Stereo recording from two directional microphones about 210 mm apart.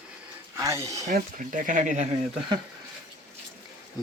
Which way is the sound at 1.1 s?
40° right (ahead or behind).